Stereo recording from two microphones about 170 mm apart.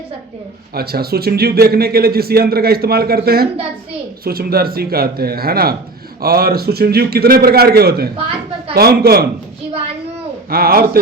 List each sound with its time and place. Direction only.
0.7 s a man's voice: 65° right (ahead or behind)
10.5 s a man's voice: 60° right (ahead or behind)